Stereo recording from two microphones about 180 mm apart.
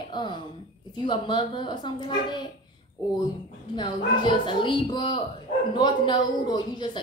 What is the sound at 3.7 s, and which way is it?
A woman's voice, 25° left (ahead or behind).